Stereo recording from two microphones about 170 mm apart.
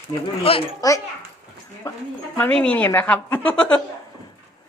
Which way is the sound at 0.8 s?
20° left (ahead or behind).